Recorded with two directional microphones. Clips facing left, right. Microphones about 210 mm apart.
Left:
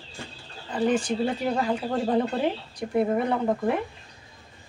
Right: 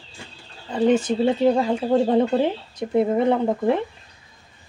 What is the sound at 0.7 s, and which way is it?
Speech, 25° right (ahead or behind).